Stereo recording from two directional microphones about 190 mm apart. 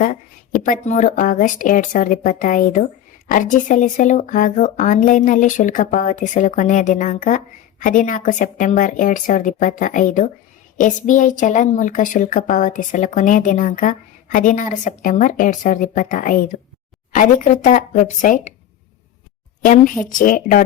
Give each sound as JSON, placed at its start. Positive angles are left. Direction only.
{"t": 0.0, "sound": "speech", "side_deg": 40}
{"t": 19.6, "sound": "speech", "side_deg": 45}